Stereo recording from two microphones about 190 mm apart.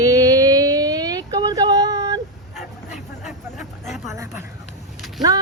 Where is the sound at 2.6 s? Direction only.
40° left (ahead or behind).